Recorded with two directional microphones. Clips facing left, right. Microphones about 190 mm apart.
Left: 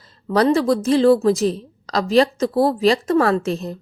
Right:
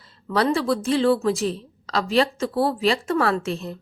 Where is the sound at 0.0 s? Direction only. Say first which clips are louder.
Left 5 dB; 40° left (ahead or behind).